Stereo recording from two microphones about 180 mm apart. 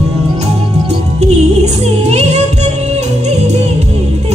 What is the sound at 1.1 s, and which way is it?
Music, 35° right (ahead or behind).